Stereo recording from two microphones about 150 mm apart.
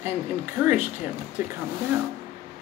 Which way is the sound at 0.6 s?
10° right (ahead or behind).